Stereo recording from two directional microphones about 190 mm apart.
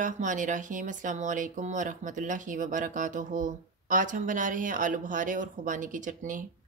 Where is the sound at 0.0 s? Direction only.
40° right (ahead or behind).